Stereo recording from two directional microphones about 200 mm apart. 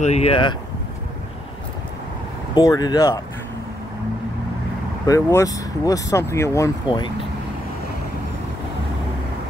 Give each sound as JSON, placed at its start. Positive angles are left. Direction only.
{"t": 0.0, "sound": "speech", "side_deg": 30}
{"t": 2.5, "sound": "speech", "side_deg": 20}
{"t": 5.0, "sound": "speech", "side_deg": 15}